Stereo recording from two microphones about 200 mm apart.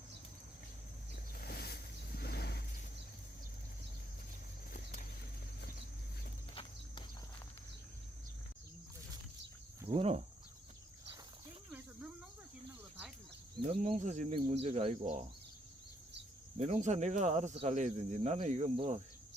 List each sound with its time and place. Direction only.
1.4 s vehicle: 50° left (ahead or behind)
4.7 s a sound: 45° left (ahead or behind)
6.5 s clip-clop: 25° left (ahead or behind)
9.9 s speech: 30° right (ahead or behind)
13.7 s speech: 35° right (ahead or behind)
16.6 s speech: 35° right (ahead or behind)